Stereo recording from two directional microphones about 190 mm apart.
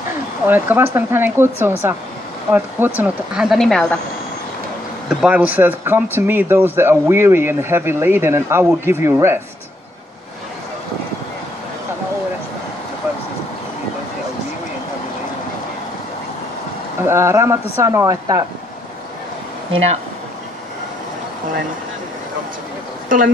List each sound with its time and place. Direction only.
0.5 s speech: 10° right (ahead or behind)
5.2 s speech: 10° right (ahead or behind)
17.0 s speech: 15° right (ahead or behind)
23.0 s speech: 45° right (ahead or behind)